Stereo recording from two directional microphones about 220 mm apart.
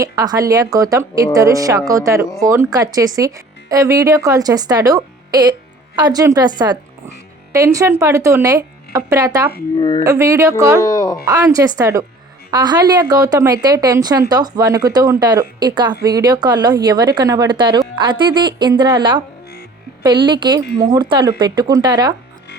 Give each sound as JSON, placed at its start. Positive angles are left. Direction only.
{"t": 0.0, "sound": "speech", "side_deg": -15}
{"t": 9.7, "sound": "speech", "side_deg": 20}
{"t": 10.0, "sound": "speech", "side_deg": -15}
{"t": 10.8, "sound": "speech", "side_deg": 15}
{"t": 11.3, "sound": "speech", "side_deg": -15}
{"t": 20.2, "sound": "speech", "side_deg": -20}